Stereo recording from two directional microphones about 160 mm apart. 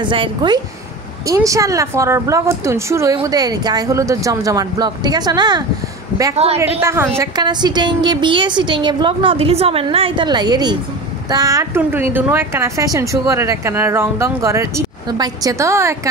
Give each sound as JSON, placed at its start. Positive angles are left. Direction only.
{"t": 0.0, "sound": "speech", "side_deg": -30}
{"t": 1.2, "sound": "speech", "side_deg": -20}
{"t": 6.3, "sound": "a woman's voice", "side_deg": -40}
{"t": 6.8, "sound": "a woman's voice", "side_deg": -15}
{"t": 7.2, "sound": "a woman's voice", "side_deg": -25}